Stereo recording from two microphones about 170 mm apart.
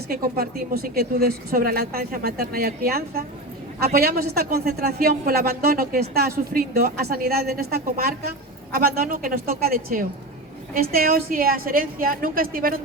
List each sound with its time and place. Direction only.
0.1 s a man's voice: 60° right (ahead or behind)